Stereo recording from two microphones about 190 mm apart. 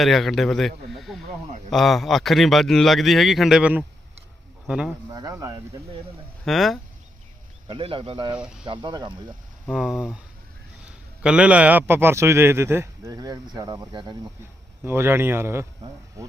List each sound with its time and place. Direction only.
0.0 s a man's voice: centre (ahead or behind)
5.1 s a man's voice: 15° right (ahead or behind)
6.4 s speech: centre (ahead or behind)
7.7 s speech: 25° right (ahead or behind)
8.4 s speech: 5° right (ahead or behind)
8.6 s speech: 25° right (ahead or behind)
9.6 s a man's voice: 5° right (ahead or behind)